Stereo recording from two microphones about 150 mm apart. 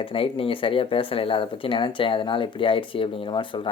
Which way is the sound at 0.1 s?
40° left (ahead or behind).